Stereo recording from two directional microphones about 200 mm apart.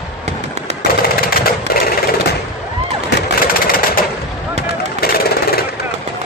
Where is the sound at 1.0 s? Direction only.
50° left (ahead or behind).